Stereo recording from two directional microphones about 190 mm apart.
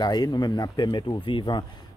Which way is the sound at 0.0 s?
20° left (ahead or behind).